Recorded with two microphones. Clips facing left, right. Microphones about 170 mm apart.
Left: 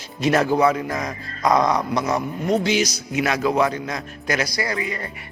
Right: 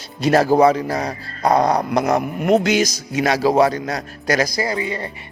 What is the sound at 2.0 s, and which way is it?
Speech, 60° right (ahead or behind).